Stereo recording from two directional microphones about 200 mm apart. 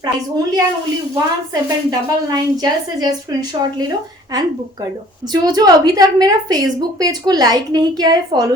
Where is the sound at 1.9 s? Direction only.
20° right (ahead or behind).